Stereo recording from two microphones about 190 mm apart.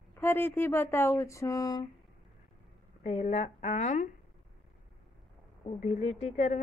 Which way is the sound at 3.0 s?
35° left (ahead or behind).